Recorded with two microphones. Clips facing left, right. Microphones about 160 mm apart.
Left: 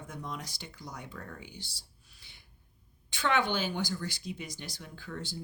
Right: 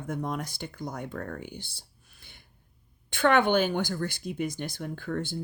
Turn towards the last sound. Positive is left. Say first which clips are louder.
# right 9 dB
turn(degrees=-55)  # may be behind; listen again after turning